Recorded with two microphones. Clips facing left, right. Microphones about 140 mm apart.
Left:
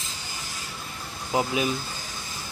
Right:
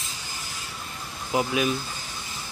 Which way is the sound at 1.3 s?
20° left (ahead or behind).